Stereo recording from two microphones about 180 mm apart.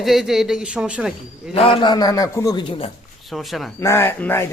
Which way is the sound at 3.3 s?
Centre (ahead or behind).